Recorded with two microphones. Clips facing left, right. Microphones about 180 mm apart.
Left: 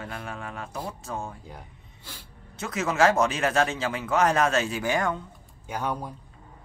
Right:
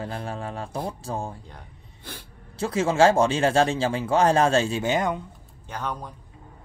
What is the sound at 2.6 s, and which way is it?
Speech, 30° right (ahead or behind).